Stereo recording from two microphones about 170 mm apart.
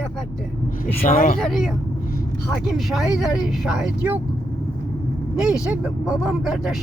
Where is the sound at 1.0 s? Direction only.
50° left (ahead or behind).